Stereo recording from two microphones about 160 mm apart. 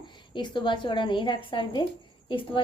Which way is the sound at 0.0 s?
30° left (ahead or behind).